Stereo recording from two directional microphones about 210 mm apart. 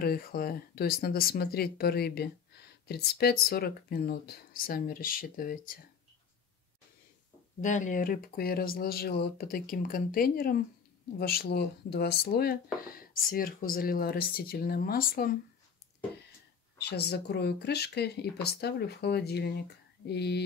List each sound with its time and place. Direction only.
0.0 s speech: 45° left (ahead or behind)
7.6 s speech: 35° left (ahead or behind)
16.7 s speech: 50° left (ahead or behind)